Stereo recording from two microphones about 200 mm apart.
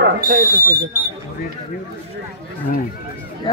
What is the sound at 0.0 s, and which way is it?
Fire alarm, 45° right (ahead or behind).